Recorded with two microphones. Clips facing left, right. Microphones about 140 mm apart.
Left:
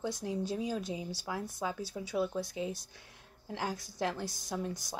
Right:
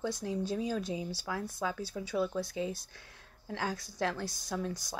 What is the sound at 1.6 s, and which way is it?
A woman's voice, 15° left (ahead or behind).